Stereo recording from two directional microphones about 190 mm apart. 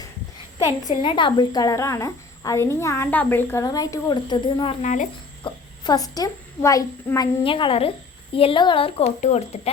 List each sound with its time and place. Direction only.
1.0 s a woman's voice: 25° left (ahead or behind)
5.4 s a woman's voice: 20° left (ahead or behind)